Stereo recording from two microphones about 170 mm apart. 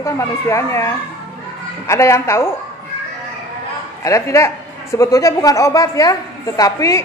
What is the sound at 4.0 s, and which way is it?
A woman's voice, 20° left (ahead or behind).